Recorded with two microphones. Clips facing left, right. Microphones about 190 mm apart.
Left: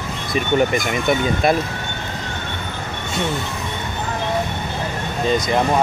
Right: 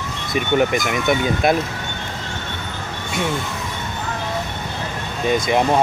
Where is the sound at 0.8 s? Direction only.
Centre (ahead or behind).